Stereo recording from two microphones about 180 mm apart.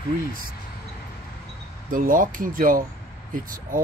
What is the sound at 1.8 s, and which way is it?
Speech, 50° right (ahead or behind).